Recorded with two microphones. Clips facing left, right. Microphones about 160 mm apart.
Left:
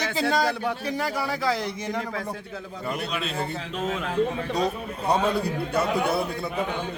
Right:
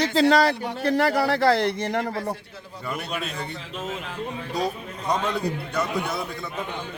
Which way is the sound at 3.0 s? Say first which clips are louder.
Left 1 dB; 50° right (ahead or behind).